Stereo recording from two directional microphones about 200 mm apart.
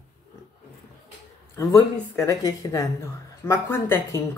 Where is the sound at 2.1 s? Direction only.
15° left (ahead or behind).